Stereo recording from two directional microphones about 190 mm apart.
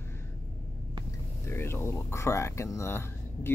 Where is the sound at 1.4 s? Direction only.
15° left (ahead or behind).